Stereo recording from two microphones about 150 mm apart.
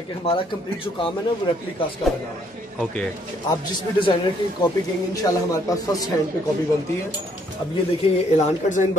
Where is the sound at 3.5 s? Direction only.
30° left (ahead or behind).